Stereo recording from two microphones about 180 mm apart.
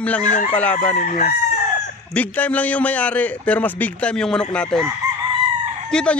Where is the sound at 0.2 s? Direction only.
45° left (ahead or behind).